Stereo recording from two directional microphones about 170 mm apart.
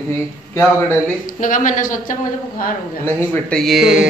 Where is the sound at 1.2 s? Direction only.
50° left (ahead or behind).